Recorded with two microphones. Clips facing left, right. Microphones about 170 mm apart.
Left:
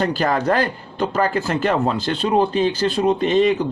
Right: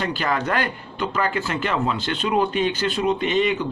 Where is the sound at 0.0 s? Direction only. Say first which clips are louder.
Left 5 dB; 40° left (ahead or behind).